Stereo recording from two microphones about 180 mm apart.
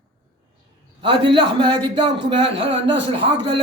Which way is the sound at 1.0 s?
25° right (ahead or behind).